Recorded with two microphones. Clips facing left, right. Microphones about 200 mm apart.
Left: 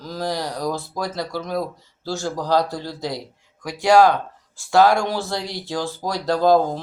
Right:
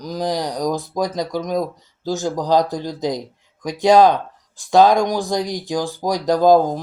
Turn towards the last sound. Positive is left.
turn(degrees=-15)  # may be behind; listen again after turning